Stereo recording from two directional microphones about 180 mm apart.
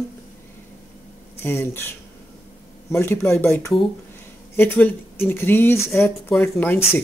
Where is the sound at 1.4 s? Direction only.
15° left (ahead or behind).